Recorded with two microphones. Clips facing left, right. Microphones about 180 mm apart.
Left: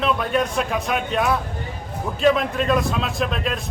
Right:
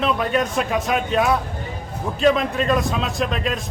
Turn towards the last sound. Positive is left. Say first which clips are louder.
# right 1 dB
turn(degrees=0)  # may be behind; listen again after turning